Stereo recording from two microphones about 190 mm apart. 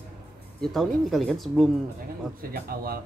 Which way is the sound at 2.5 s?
50° right (ahead or behind).